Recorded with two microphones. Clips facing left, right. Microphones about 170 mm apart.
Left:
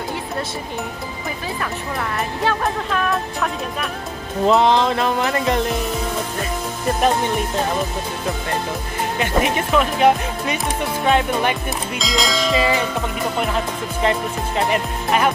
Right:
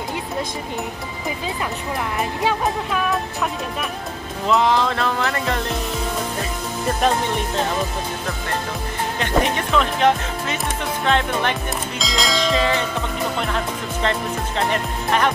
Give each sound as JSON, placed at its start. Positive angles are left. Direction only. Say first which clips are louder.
{"t": 2.4, "sound": "music", "louder": "left 1 dB", "side_deg": -10}
{"t": 4.5, "sound": "music", "louder": "left 3 dB", "side_deg": 30}
{"t": 9.2, "sound": "speech", "louder": "left 1 dB", "side_deg": 10}
{"t": 12.0, "sound": "music", "louder": "left 1 dB", "side_deg": 0}
{"t": 14.7, "sound": "speech", "louder": "left 2 dB", "side_deg": 10}